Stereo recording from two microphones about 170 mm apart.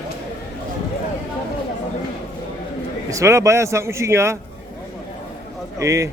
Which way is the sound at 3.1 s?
15° right (ahead or behind).